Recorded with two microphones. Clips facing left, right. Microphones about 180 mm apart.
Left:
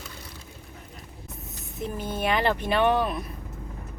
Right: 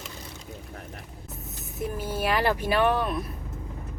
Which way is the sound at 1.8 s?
5° right (ahead or behind).